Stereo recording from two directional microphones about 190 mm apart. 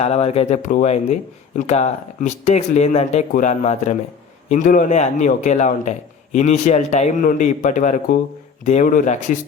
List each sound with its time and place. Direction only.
0.0 s speech: 35° left (ahead or behind)